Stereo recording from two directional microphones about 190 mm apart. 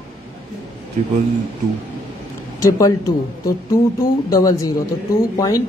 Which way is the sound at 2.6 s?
15° left (ahead or behind).